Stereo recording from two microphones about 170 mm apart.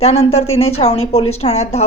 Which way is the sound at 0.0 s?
35° left (ahead or behind).